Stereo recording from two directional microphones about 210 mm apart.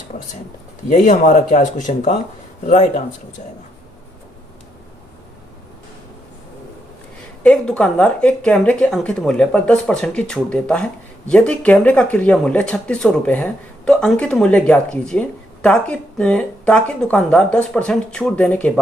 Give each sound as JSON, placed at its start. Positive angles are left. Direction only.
{"t": 0.9, "sound": "speech", "side_deg": 40}
{"t": 7.4, "sound": "speech", "side_deg": 5}